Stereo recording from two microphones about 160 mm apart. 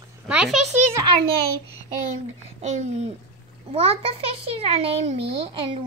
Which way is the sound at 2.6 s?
45° right (ahead or behind).